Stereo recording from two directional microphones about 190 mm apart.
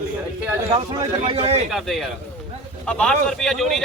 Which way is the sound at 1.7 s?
Centre (ahead or behind).